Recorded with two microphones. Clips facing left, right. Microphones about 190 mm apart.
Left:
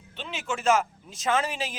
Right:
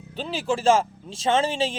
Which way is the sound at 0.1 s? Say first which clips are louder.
Right 7 dB; 35° right (ahead or behind).